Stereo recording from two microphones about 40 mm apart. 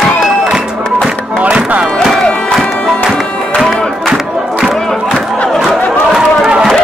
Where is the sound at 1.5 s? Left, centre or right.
Right.